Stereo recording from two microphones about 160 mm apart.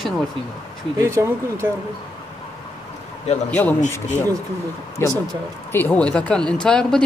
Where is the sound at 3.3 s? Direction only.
45° left (ahead or behind).